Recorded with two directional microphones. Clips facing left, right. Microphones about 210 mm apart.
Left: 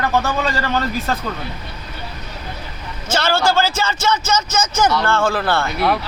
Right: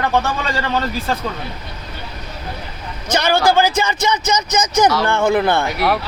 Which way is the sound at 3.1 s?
20° right (ahead or behind).